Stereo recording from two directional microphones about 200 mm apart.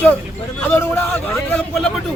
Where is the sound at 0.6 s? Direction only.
10° left (ahead or behind).